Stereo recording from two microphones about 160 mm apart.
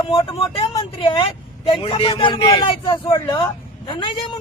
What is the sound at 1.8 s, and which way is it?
A man's voice, 35° left (ahead or behind).